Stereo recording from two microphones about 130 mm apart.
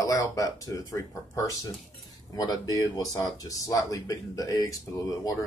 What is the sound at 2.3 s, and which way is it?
Speech, 30° left (ahead or behind).